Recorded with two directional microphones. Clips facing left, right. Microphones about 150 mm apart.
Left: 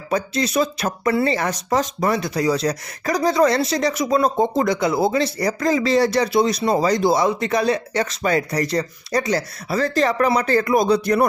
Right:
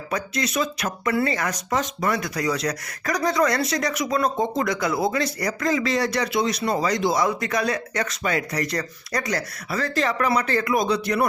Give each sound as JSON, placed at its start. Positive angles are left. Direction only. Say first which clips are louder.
{"t": 0.1, "sound": "speech", "louder": "left 5 dB", "side_deg": 30}